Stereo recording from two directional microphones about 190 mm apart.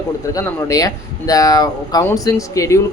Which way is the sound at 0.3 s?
20° left (ahead or behind).